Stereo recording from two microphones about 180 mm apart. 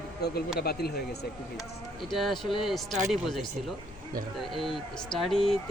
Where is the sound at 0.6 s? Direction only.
60° left (ahead or behind).